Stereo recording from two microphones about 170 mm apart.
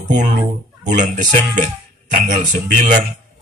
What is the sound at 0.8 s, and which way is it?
Speech, 50° right (ahead or behind).